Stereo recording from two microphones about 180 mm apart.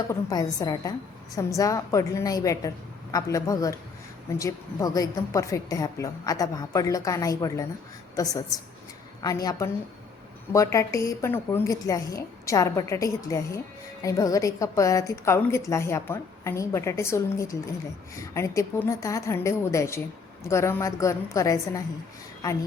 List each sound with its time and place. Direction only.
0.1 s a woman's voice: 20° left (ahead or behind)